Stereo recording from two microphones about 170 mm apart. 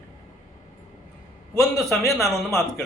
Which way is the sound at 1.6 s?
Centre (ahead or behind).